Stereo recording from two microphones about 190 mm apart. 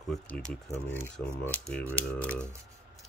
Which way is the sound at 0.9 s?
10° left (ahead or behind).